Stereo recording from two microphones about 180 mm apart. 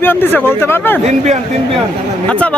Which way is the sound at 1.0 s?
40° right (ahead or behind).